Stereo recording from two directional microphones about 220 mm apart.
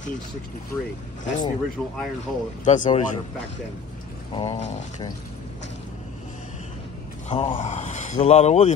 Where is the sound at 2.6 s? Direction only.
35° left (ahead or behind).